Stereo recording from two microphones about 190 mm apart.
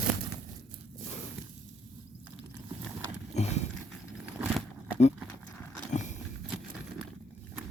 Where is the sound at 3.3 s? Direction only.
35° left (ahead or behind).